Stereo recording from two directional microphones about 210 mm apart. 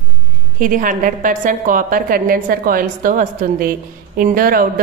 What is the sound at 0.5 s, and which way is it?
A woman's voice, 40° right (ahead or behind).